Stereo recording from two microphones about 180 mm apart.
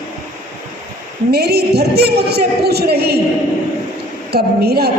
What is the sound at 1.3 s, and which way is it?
A woman's voice, 60° right (ahead or behind).